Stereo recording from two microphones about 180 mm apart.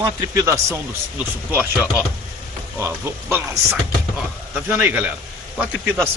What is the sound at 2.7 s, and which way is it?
Speech, 15° right (ahead or behind).